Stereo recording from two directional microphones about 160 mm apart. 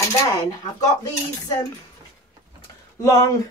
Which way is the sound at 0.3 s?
20° left (ahead or behind).